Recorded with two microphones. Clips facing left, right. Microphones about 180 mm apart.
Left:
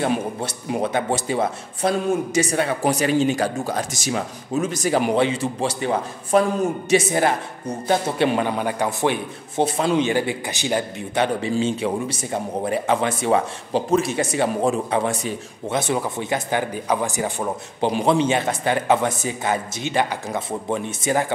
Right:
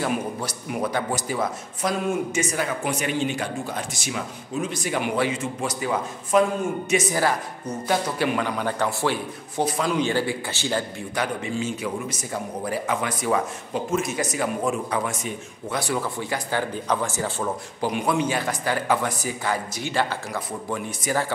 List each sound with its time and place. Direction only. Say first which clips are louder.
0.0 s speech: left 3 dB; 25° left (ahead or behind)
5.1 s a man's voice: left 4 dB; 30° left (ahead or behind)